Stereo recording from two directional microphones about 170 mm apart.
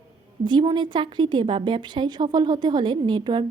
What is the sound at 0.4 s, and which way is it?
A woman's voice, 25° right (ahead or behind).